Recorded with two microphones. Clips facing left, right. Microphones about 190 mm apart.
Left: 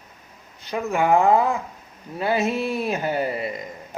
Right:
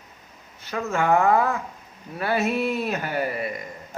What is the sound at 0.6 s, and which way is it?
A man's voice, 15° left (ahead or behind).